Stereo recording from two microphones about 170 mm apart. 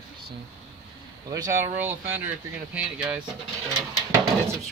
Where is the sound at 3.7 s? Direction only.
20° right (ahead or behind).